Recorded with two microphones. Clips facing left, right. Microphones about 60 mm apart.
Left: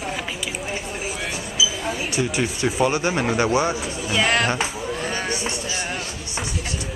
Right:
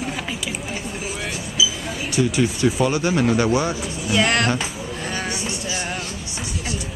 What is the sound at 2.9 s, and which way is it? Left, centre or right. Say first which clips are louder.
Speech: right 2 dB; centre.